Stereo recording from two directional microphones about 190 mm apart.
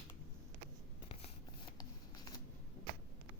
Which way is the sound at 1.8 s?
20° left (ahead or behind).